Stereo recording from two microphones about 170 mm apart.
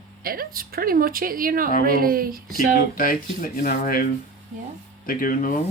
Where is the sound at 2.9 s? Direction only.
55° left (ahead or behind).